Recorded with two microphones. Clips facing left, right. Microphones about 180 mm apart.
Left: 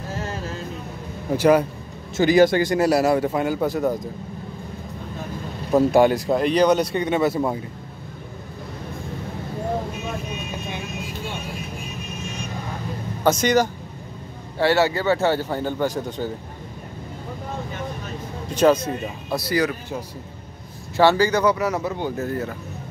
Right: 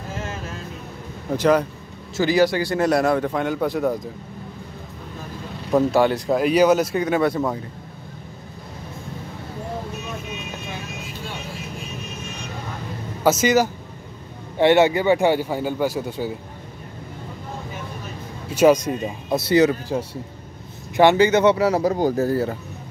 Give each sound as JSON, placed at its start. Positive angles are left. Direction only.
{"t": 1.3, "sound": "speech", "side_deg": 10}
{"t": 2.3, "sound": "a man's voice", "side_deg": 50}
{"t": 2.6, "sound": "a man's voice", "side_deg": 10}
{"t": 5.9, "sound": "speech", "side_deg": 15}
{"t": 6.2, "sound": "a man's voice", "side_deg": -5}
{"t": 13.2, "sound": "a man's voice", "side_deg": -5}
{"t": 14.6, "sound": "speech", "side_deg": -20}
{"t": 18.5, "sound": "speech", "side_deg": -10}
{"t": 19.2, "sound": "speech", "side_deg": -25}